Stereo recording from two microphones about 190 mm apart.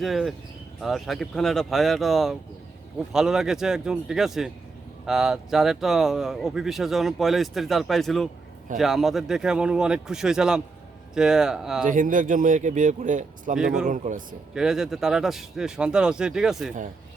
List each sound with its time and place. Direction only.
0.0 s speech: centre (ahead or behind)
11.9 s speech: 45° right (ahead or behind)
13.6 s speech: 5° right (ahead or behind)
13.8 s speech: 40° right (ahead or behind)
14.5 s speech: 5° right (ahead or behind)